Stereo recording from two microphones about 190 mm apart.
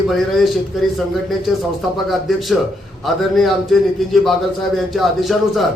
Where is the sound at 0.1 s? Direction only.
Centre (ahead or behind).